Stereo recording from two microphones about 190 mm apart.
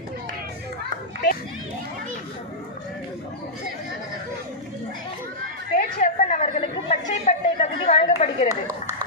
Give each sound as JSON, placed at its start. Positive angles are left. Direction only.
{"t": 5.8, "sound": "chatter", "side_deg": 45}